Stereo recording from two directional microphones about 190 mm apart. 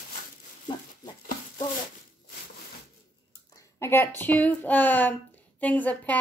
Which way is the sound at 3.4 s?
15° left (ahead or behind).